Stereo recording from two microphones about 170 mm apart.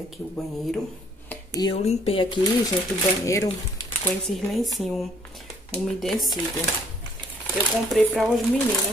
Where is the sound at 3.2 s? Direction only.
20° left (ahead or behind).